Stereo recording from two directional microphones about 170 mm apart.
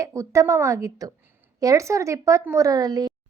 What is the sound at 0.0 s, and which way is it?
A woman's voice, 20° right (ahead or behind).